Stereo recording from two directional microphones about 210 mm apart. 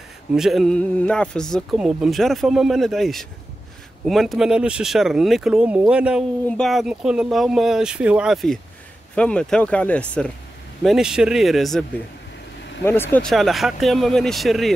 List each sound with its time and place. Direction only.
0.3 s speech: centre (ahead or behind)
12.8 s speech: 10° left (ahead or behind)
13.3 s speech: centre (ahead or behind)